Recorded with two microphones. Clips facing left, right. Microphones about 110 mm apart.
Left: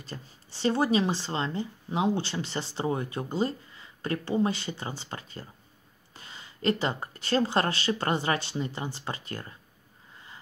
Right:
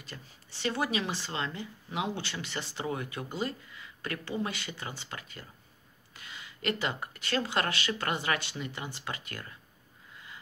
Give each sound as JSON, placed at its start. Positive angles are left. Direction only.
{"t": 0.0, "sound": "speech", "side_deg": 35}
{"t": 10.1, "sound": "snort", "side_deg": 30}